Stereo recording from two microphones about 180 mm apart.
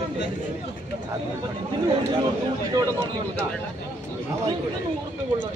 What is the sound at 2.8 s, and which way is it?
Speech, 15° right (ahead or behind).